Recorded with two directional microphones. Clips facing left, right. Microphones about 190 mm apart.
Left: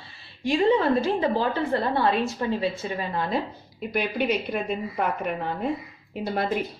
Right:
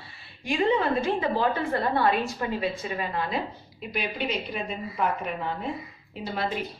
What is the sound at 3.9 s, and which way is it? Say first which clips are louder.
A woman's voice: left 5 dB; 55° left (ahead or behind).